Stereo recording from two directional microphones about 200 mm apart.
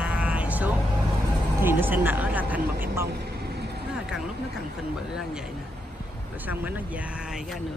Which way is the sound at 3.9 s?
Centre (ahead or behind).